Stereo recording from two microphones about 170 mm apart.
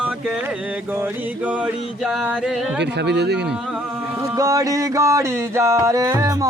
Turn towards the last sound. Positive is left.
turn(degrees=-20)  # may be behind; listen again after turning